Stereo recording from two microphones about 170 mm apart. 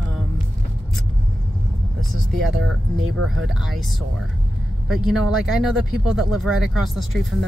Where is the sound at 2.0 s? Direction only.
Centre (ahead or behind).